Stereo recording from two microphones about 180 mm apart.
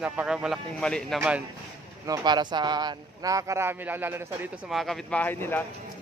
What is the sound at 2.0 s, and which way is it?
Speech, 20° right (ahead or behind).